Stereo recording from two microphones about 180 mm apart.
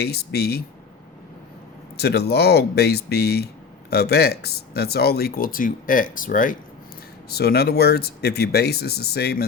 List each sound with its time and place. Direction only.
0.0 s speech: 65° left (ahead or behind)
2.0 s speech: 65° left (ahead or behind)
7.3 s speech: 60° left (ahead or behind)